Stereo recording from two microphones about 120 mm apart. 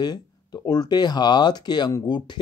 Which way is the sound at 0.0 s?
35° left (ahead or behind).